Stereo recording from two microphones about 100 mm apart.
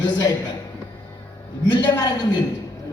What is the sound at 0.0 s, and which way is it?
Speech, 45° left (ahead or behind).